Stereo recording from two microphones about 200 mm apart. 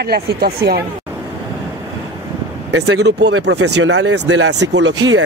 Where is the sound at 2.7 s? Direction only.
65° right (ahead or behind).